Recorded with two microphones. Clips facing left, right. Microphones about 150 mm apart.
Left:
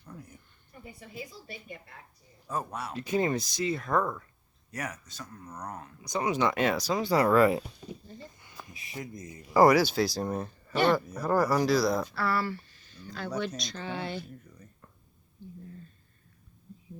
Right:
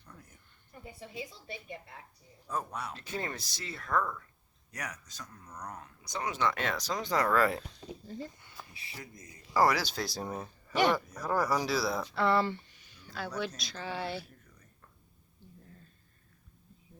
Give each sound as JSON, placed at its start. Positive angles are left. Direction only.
{"t": 0.0, "sound": "a sound", "side_deg": 10}
{"t": 0.9, "sound": "a woman's voice", "side_deg": -25}
{"t": 2.5, "sound": "speech", "side_deg": 5}
{"t": 4.7, "sound": "speech", "side_deg": 5}
{"t": 9.6, "sound": "speech", "side_deg": 10}
{"t": 10.9, "sound": "speech", "side_deg": 5}
{"t": 12.1, "sound": "speech", "side_deg": -20}